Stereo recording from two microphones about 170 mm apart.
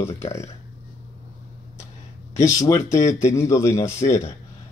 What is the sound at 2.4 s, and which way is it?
Speech, 15° left (ahead or behind).